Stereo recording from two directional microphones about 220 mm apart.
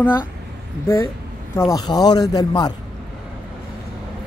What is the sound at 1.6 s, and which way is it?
A woman's voice, 15° left (ahead or behind).